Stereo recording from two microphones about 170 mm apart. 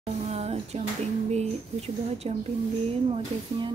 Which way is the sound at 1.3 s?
40° right (ahead or behind).